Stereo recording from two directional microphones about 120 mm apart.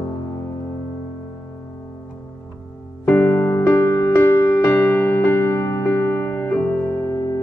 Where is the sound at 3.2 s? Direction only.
25° left (ahead or behind).